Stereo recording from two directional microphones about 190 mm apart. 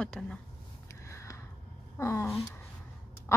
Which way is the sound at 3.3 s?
15° left (ahead or behind).